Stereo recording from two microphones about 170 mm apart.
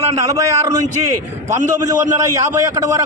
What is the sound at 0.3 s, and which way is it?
A man's voice, 20° right (ahead or behind).